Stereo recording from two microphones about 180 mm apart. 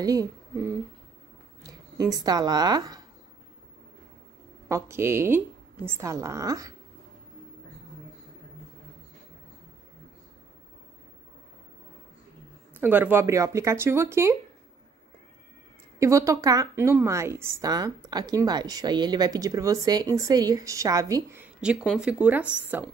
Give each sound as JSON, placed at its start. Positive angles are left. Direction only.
{"t": 0.0, "sound": "speech", "side_deg": -20}
{"t": 1.6, "sound": "a sound", "side_deg": -20}
{"t": 2.1, "sound": "a woman's voice", "side_deg": -20}
{"t": 4.6, "sound": "speech", "side_deg": -15}
{"t": 12.7, "sound": "speech", "side_deg": -10}
{"t": 16.0, "sound": "a woman's voice", "side_deg": -15}